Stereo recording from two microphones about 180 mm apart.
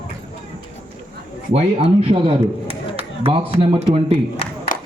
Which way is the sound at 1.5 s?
35° right (ahead or behind).